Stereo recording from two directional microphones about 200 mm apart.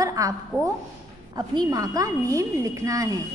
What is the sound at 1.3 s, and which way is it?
A woman's voice, 20° right (ahead or behind).